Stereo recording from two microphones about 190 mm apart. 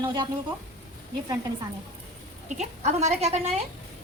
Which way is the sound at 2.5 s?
40° right (ahead or behind).